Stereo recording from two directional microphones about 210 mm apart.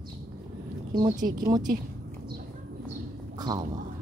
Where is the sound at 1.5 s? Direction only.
20° right (ahead or behind).